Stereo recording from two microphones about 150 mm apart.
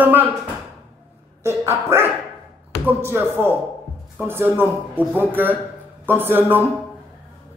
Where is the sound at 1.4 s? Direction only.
15° right (ahead or behind).